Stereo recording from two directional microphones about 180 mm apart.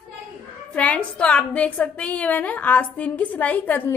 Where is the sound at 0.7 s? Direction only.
5° left (ahead or behind).